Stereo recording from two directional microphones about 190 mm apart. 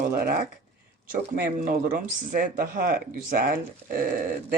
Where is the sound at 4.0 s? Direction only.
45° right (ahead or behind).